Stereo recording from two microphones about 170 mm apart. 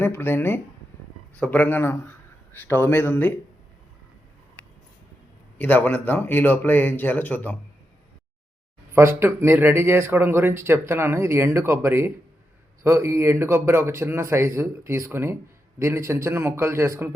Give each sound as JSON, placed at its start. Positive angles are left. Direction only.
{"t": 0.0, "sound": "speech", "side_deg": 15}
{"t": 5.5, "sound": "speech", "side_deg": 10}
{"t": 8.9, "sound": "speech", "side_deg": -15}